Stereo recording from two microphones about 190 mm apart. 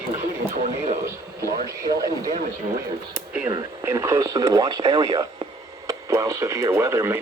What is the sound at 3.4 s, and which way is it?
Speech, 15° right (ahead or behind).